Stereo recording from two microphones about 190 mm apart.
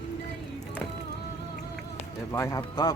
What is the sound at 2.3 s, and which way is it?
Speech, 15° left (ahead or behind).